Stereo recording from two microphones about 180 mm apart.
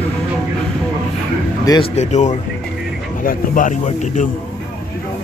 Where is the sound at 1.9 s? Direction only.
40° left (ahead or behind).